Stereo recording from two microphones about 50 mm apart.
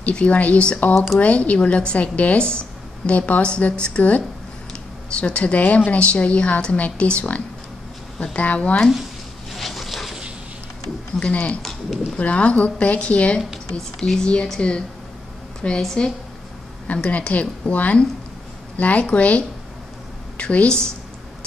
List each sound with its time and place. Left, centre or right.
0.0 s a woman's voice: left
0.9 s speech: centre
1.2 s a woman's voice: left
9.5 s a sound: centre
11.1 s a woman's voice: left
13.7 s speech: centre
14.6 s a woman's voice: left
16.8 s a woman's voice: left